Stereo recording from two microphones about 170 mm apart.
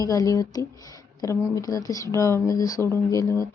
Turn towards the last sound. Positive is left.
turn(degrees=20)  # may be behind; listen again after turning